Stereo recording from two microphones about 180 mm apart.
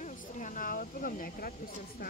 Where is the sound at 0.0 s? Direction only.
45° left (ahead or behind).